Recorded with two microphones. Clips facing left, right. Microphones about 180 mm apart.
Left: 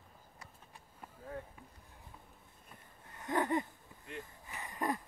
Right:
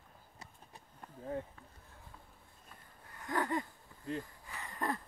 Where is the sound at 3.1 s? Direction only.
25° left (ahead or behind).